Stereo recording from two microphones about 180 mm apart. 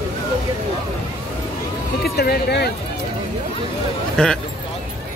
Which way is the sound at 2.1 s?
60° left (ahead or behind).